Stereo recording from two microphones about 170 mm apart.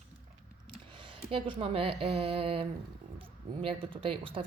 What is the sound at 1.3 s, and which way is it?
Speech, 30° right (ahead or behind).